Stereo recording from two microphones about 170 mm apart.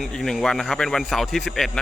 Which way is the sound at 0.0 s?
5° left (ahead or behind).